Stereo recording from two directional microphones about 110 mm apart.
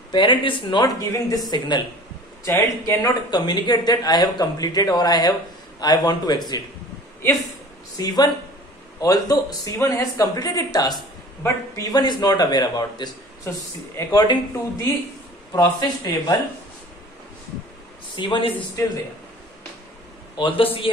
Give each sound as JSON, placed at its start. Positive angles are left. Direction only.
{"t": 0.1, "sound": "speech", "side_deg": 45}
{"t": 0.8, "sound": "speech", "side_deg": 35}
{"t": 2.4, "sound": "speech", "side_deg": 25}
{"t": 3.3, "sound": "speech", "side_deg": 40}
{"t": 8.0, "sound": "speech", "side_deg": 40}
{"t": 14.2, "sound": "speech", "side_deg": 40}
{"t": 18.1, "sound": "speech", "side_deg": 45}
{"t": 20.3, "sound": "speech", "side_deg": 50}